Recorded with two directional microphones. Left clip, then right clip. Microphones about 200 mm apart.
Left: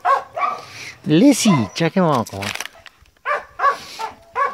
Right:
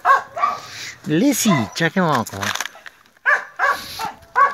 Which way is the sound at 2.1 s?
Centre (ahead or behind).